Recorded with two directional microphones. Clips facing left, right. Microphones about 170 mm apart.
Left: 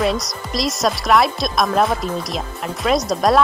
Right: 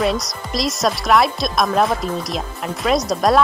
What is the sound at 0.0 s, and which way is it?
Speech, centre (ahead or behind).